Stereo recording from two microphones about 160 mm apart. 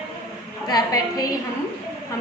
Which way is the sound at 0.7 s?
25° left (ahead or behind).